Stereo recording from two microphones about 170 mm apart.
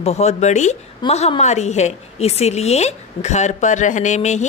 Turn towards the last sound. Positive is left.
turn(degrees=45)  # may be behind; listen again after turning